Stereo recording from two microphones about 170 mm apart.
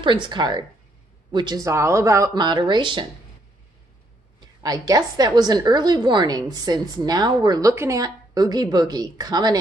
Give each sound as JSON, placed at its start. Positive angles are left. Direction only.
{"t": 0.0, "sound": "a woman's voice", "side_deg": -30}
{"t": 4.6, "sound": "a woman's voice", "side_deg": -20}